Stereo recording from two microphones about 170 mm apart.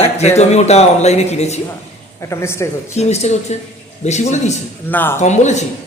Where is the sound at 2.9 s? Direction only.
40° left (ahead or behind).